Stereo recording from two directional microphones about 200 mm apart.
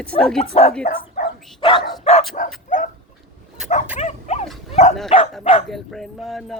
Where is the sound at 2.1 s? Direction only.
30° left (ahead or behind).